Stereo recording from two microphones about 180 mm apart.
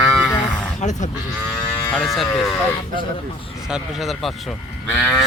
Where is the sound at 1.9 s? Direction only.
5° left (ahead or behind).